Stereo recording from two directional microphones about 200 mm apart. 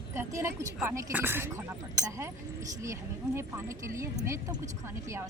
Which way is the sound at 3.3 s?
15° right (ahead or behind).